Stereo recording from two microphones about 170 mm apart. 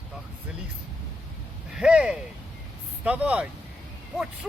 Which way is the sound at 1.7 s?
5° right (ahead or behind).